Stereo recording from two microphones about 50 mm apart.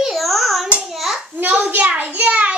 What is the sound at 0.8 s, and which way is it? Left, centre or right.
Hands, centre.